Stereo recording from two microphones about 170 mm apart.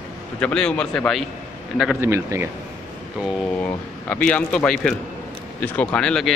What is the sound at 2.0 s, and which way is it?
Speech, 15° right (ahead or behind).